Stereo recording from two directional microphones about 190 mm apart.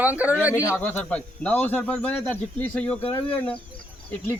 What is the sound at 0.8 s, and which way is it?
Speech, 10° left (ahead or behind).